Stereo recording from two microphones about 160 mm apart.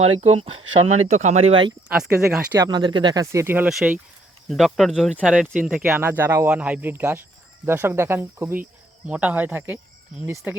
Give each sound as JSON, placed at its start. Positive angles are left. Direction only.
{"t": 0.0, "sound": "speech", "side_deg": -40}
{"t": 1.9, "sound": "speech", "side_deg": -5}
{"t": 2.6, "sound": "speech", "side_deg": -25}
{"t": 3.7, "sound": "speech", "side_deg": 0}
{"t": 6.0, "sound": "speech", "side_deg": -15}